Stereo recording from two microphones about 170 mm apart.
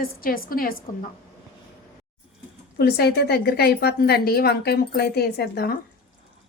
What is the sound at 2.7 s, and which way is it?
A woman's voice, 70° left (ahead or behind).